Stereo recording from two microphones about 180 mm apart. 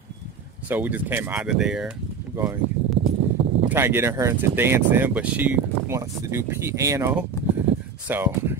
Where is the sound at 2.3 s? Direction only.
20° right (ahead or behind).